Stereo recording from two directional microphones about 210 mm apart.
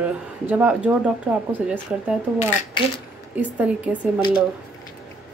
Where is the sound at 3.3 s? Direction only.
5° right (ahead or behind).